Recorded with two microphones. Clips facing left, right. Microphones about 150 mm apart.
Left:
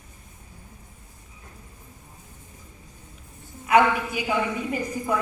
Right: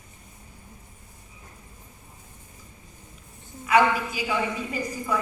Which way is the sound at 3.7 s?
55° left (ahead or behind).